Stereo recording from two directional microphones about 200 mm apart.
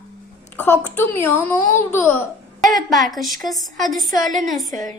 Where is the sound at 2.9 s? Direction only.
Centre (ahead or behind).